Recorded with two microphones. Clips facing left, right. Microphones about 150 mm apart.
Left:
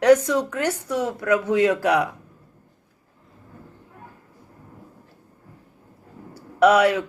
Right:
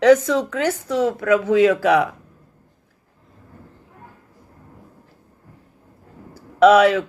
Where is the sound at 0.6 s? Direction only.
90° right.